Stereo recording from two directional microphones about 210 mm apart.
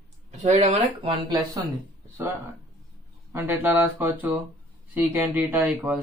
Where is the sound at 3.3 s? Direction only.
10° right (ahead or behind).